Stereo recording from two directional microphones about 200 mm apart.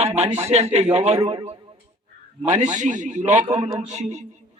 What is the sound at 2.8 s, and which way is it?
Speech, 40° right (ahead or behind).